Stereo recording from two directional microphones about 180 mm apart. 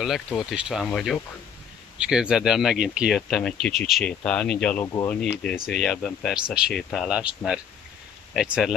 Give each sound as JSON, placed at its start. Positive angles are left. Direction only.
{"t": 0.0, "sound": "speech", "side_deg": 0}
{"t": 4.8, "sound": "speech", "side_deg": 20}
{"t": 5.1, "sound": "speech", "side_deg": 5}